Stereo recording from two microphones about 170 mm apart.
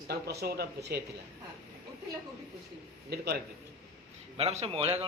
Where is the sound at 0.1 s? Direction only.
70° right (ahead or behind).